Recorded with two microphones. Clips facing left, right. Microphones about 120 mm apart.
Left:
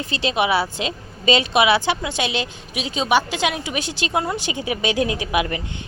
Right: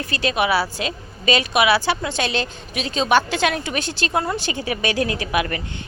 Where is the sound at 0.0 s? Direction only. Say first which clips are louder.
Even; 25° left (ahead or behind).